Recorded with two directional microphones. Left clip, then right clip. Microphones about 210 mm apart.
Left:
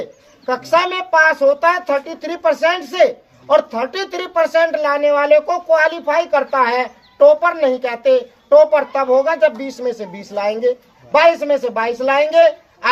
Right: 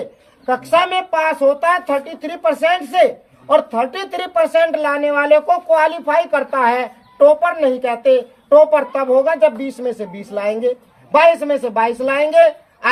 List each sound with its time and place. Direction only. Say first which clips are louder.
0.4 s speech: right 1 dB; 5° right (ahead or behind)